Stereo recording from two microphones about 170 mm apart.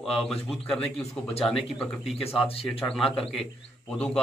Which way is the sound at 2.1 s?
35° left (ahead or behind).